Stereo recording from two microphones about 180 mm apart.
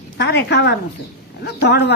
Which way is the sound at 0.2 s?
70° left (ahead or behind).